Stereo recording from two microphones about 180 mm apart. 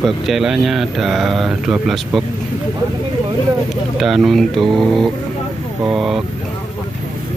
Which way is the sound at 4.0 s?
Centre (ahead or behind).